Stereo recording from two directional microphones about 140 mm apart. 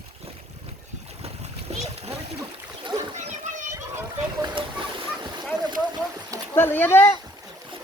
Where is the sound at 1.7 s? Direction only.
50° right (ahead or behind).